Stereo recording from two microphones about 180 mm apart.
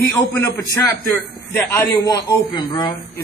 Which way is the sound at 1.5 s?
15° left (ahead or behind).